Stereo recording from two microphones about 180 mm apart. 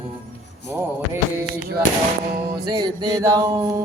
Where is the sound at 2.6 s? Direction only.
20° right (ahead or behind).